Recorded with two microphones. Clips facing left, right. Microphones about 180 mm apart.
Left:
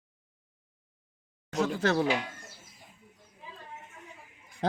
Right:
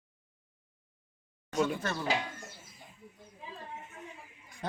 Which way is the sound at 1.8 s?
85° left.